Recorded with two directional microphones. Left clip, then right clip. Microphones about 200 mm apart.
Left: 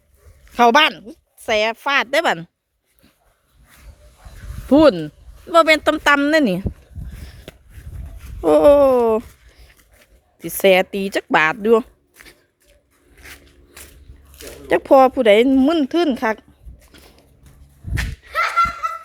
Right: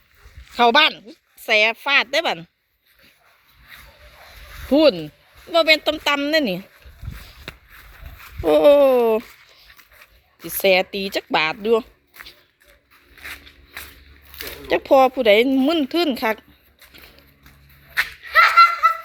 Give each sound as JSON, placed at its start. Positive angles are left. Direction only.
{"t": 0.5, "sound": "speech", "side_deg": 25}
{"t": 4.7, "sound": "a woman's voice", "side_deg": 35}
{"t": 8.2, "sound": "a sound", "side_deg": 20}
{"t": 10.4, "sound": "a woman's voice", "side_deg": 35}
{"t": 14.3, "sound": "speech", "side_deg": 30}
{"t": 18.3, "sound": "laughter", "side_deg": 15}